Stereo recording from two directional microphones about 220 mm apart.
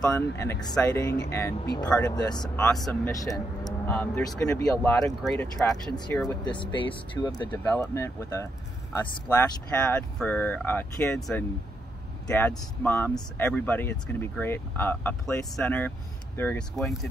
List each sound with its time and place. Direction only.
0.0 s speech: 10° left (ahead or behind)
2.1 s speech: 20° left (ahead or behind)
2.5 s speech: 5° left (ahead or behind)
7.6 s speech: 5° left (ahead or behind)